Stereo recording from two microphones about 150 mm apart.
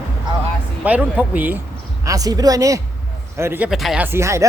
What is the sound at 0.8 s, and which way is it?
Speech, 10° right (ahead or behind).